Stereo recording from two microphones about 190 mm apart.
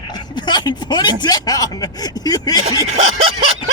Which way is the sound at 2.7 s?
30° right (ahead or behind).